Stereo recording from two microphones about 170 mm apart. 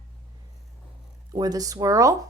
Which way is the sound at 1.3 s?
20° right (ahead or behind).